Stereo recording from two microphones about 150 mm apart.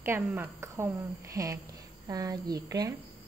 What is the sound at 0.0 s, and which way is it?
A woman's voice, 15° right (ahead or behind).